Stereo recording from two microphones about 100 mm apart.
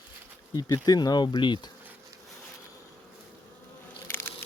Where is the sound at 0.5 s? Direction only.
40° left (ahead or behind).